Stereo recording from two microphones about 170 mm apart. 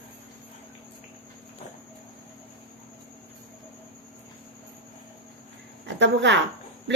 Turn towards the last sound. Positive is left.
turn(degrees=-90)